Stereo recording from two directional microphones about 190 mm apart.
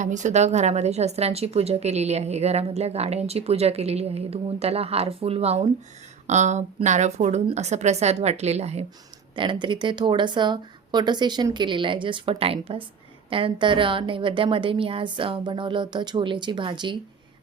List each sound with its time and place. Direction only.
0.0 s a woman's voice: 40° right (ahead or behind); by 17.0 s 25° right (ahead or behind)